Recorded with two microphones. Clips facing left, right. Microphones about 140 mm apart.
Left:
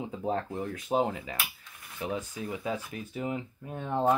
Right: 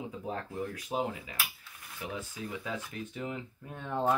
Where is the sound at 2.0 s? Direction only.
25° left (ahead or behind).